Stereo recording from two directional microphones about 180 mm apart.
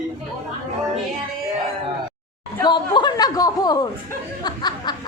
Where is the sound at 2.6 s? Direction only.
25° left (ahead or behind).